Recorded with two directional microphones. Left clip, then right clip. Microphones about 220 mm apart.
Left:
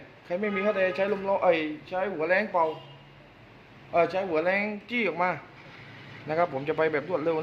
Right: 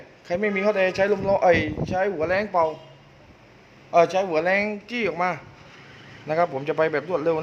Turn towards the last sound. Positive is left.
turn(degrees=-15)  # may be behind; listen again after turning